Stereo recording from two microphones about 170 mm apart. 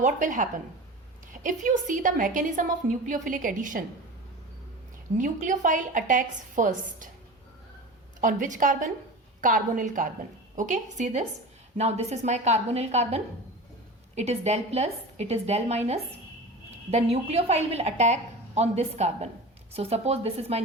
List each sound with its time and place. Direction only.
0.0 s a woman's voice: 50° right (ahead or behind)
5.1 s a woman's voice: 50° right (ahead or behind)
8.2 s a woman's voice: 50° right (ahead or behind)
16.9 s a woman's voice: 40° right (ahead or behind)